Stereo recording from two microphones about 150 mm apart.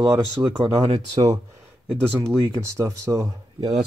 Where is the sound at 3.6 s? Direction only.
30° right (ahead or behind).